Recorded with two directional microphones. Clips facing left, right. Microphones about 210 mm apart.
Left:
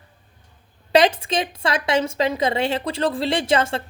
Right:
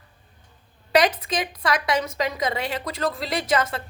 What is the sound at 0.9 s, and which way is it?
Speech, 25° left (ahead or behind).